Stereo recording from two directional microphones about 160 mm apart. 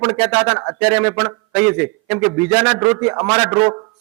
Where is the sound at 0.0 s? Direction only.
10° right (ahead or behind).